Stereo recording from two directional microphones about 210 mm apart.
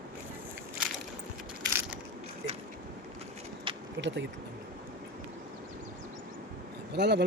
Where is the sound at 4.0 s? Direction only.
60° right (ahead or behind).